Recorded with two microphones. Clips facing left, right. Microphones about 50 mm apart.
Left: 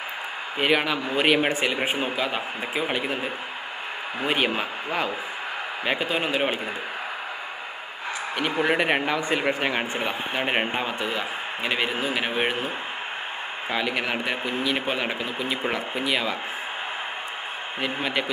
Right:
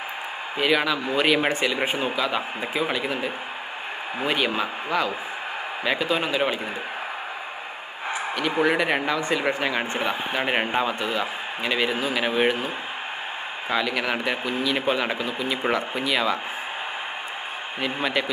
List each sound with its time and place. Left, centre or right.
0.6 s speech: left
1.4 s speech: centre
2.0 s speech: centre
4.3 s speech: left
5.9 s speech: left
8.6 s a man's voice: centre
13.7 s a man's voice: centre
17.8 s a man's voice: centre